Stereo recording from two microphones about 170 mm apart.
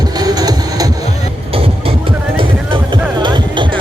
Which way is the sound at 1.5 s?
35° right (ahead or behind).